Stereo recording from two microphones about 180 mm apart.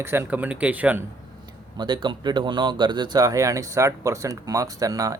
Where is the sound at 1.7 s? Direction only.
25° right (ahead or behind).